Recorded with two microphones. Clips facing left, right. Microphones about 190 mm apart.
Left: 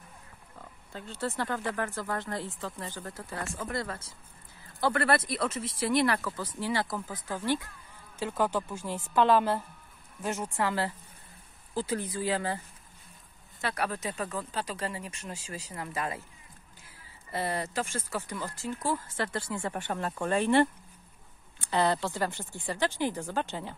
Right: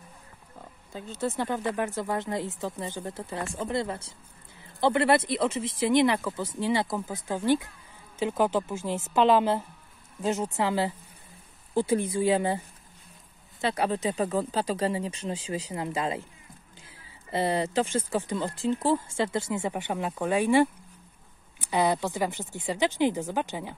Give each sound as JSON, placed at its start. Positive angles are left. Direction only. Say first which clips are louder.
{"t": 0.6, "sound": "oink", "louder": "right 3 dB", "side_deg": -15}
{"t": 1.3, "sound": "speech", "louder": "right 3 dB", "side_deg": -20}
{"t": 17.3, "sound": "speech", "louder": "right 6 dB", "side_deg": -25}
{"t": 19.6, "sound": "speech", "louder": "right 3 dB", "side_deg": -10}